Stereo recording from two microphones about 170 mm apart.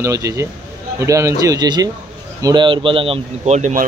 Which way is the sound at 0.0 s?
20° right (ahead or behind).